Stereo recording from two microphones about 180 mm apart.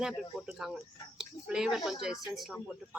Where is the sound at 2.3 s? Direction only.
Centre (ahead or behind).